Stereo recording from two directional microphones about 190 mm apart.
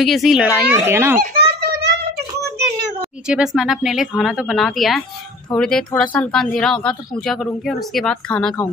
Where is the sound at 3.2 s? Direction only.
5° right (ahead or behind).